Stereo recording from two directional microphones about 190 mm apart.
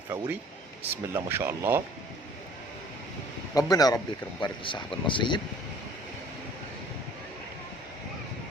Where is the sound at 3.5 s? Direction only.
20° left (ahead or behind).